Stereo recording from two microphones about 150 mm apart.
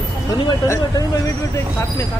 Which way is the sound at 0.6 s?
20° left (ahead or behind).